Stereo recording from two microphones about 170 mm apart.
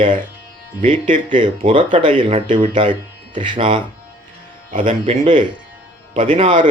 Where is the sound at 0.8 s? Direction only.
50° right (ahead or behind).